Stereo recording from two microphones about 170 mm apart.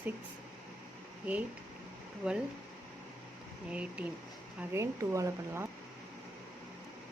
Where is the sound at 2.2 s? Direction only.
5° right (ahead or behind).